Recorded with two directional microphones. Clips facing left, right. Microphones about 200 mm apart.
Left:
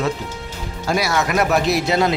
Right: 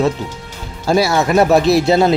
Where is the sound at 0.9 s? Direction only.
30° right (ahead or behind).